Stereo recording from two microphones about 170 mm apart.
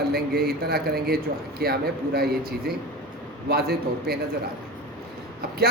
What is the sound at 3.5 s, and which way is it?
Speech, 65° right (ahead or behind).